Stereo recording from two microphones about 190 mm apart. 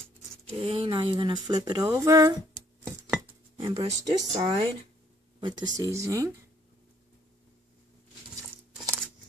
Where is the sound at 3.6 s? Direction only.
30° right (ahead or behind).